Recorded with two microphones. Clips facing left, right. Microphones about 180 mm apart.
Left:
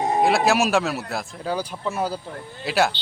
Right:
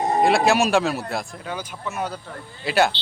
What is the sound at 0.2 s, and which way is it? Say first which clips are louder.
Speech: right 1 dB; centre (ahead or behind).